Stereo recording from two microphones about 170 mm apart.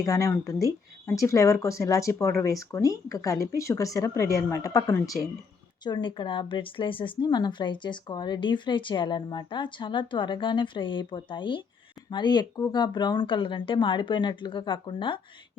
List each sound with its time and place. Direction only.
0.0 s speech: 20° left (ahead or behind)